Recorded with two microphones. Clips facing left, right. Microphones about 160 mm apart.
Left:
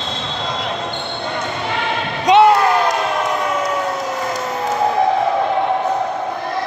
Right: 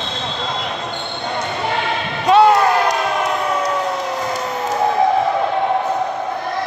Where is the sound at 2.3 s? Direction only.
20° left (ahead or behind).